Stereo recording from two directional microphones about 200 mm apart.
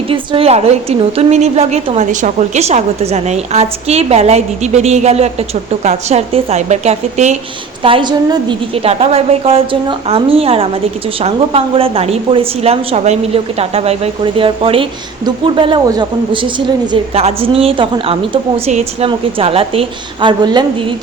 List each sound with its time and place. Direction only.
0.1 s a woman's voice: 25° right (ahead or behind)